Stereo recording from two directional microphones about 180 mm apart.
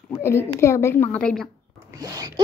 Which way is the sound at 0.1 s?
15° left (ahead or behind).